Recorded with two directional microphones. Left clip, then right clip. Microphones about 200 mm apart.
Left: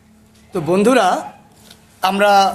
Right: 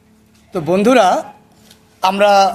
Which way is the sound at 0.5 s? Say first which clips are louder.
Right 2 dB; 30° right (ahead or behind).